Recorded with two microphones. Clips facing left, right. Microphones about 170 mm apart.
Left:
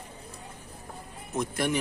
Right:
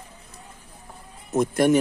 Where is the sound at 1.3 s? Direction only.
45° right (ahead or behind).